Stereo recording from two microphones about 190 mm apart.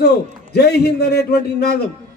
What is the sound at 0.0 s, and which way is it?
A man's voice, 60° left (ahead or behind).